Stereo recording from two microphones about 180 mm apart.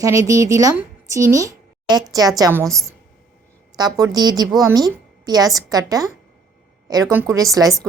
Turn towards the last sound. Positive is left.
turn(degrees=-20)  # may be behind; listen again after turning